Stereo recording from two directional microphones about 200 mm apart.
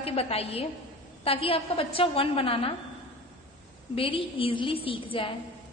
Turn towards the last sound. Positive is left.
turn(degrees=25)  # may be behind; listen again after turning